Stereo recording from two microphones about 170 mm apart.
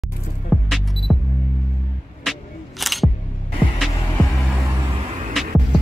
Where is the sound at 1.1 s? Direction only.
Centre (ahead or behind).